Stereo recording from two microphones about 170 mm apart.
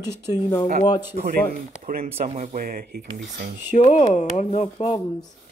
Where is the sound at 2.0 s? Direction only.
35° right (ahead or behind).